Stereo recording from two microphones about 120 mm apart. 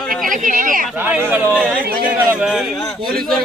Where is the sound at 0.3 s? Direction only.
90° right.